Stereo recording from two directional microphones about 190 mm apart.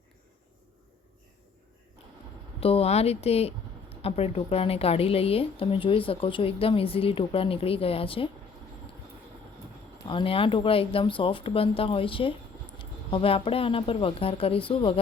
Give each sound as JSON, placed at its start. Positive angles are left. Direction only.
{"t": 2.6, "sound": "speech", "side_deg": 30}
{"t": 10.1, "sound": "speech", "side_deg": 30}